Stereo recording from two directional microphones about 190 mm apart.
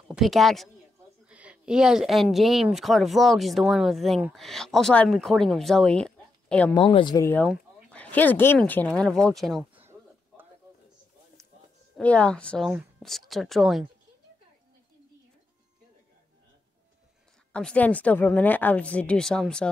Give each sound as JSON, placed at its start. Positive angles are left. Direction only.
{"t": 0.1, "sound": "a woman's voice", "side_deg": 0}
{"t": 6.7, "sound": "speech", "side_deg": 25}
{"t": 7.4, "sound": "speech", "side_deg": 5}
{"t": 12.0, "sound": "speech", "side_deg": 5}
{"t": 17.5, "sound": "a woman's voice", "side_deg": 5}